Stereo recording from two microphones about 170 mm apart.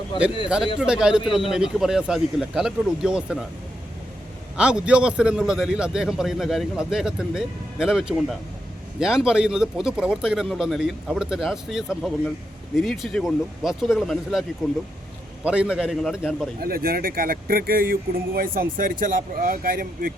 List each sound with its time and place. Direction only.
0.4 s a man's voice: 5° right (ahead or behind)
4.5 s a man's voice: 5° right (ahead or behind)
15.4 s a man's voice: 5° right (ahead or behind)
16.6 s speech: 60° right (ahead or behind)